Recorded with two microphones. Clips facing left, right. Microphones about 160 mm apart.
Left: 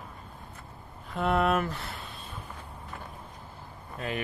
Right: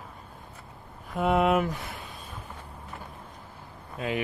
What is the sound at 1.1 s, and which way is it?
Speech, 10° right (ahead or behind).